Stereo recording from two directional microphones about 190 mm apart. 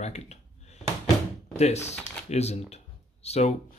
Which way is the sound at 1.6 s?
35° left (ahead or behind).